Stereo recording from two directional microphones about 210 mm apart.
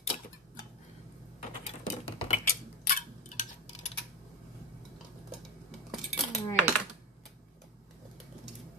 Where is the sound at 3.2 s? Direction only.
35° left (ahead or behind).